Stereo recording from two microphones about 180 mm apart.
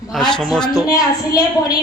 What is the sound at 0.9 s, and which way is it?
Speech, 20° left (ahead or behind).